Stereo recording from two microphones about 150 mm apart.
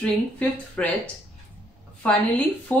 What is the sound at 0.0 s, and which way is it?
Speech, 10° left (ahead or behind).